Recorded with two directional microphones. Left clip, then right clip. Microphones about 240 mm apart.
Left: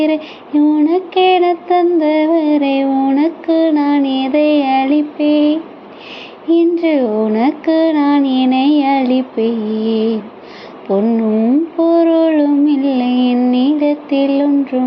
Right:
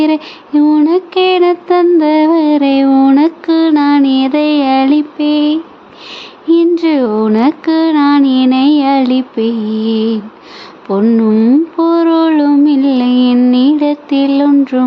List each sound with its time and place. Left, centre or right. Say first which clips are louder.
0.0 s mantra: right 3 dB; centre